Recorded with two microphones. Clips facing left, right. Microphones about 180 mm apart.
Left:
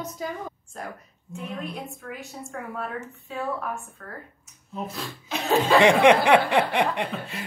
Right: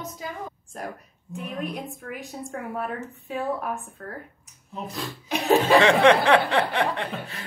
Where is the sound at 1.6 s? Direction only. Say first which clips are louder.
Right 2 dB; 15° right (ahead or behind).